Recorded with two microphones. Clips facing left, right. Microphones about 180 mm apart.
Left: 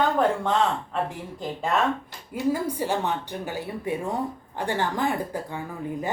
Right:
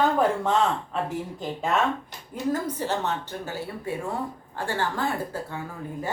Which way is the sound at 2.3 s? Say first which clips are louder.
Left 2 dB; 10° left (ahead or behind).